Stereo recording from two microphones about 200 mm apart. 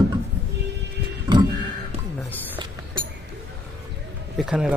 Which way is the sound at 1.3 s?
20° right (ahead or behind).